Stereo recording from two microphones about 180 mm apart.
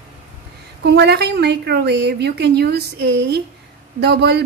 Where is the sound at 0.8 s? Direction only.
70° right (ahead or behind).